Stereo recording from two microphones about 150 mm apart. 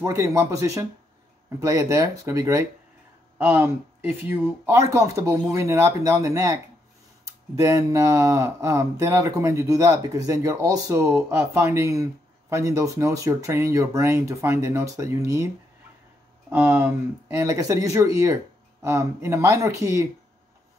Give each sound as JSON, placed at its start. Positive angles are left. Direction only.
{"t": 0.0, "sound": "speech", "side_deg": -25}